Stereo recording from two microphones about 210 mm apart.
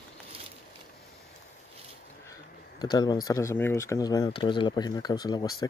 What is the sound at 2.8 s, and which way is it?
Speech, 20° left (ahead or behind).